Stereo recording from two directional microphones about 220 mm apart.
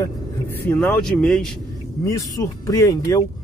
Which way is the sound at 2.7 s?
15° left (ahead or behind).